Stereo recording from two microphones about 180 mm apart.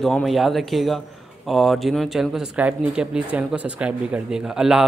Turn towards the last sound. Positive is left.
turn(degrees=-5)  # may be behind; listen again after turning